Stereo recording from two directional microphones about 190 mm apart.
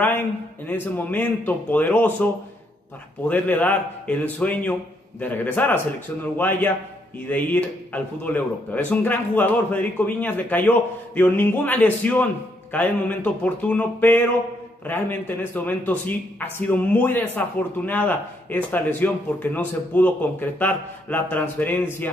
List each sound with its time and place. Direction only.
0.7 s a man's voice: 10° left (ahead or behind)
3.3 s a man's voice: 10° left (ahead or behind)